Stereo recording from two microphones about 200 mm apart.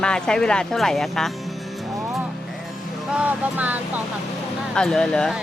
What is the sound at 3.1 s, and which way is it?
Speech, 10° right (ahead or behind).